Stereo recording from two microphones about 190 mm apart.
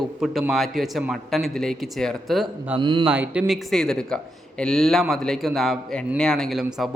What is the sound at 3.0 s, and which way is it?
A man's voice, 10° right (ahead or behind).